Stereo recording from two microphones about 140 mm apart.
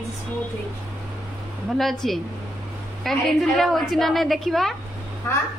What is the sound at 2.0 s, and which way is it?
A woman's voice, centre (ahead or behind).